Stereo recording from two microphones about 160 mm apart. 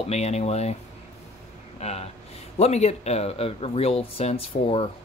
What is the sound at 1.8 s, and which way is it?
Speech, 40° left (ahead or behind).